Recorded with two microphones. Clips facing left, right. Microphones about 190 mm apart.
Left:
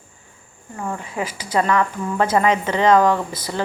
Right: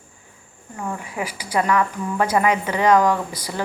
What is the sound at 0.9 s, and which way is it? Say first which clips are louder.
Speech: left 2 dB; 15° right (ahead or behind).